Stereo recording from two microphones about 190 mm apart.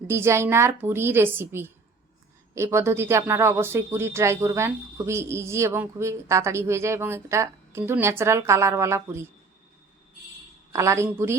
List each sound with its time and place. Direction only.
0.1 s speech: 15° right (ahead or behind)
10.7 s speech: 15° right (ahead or behind)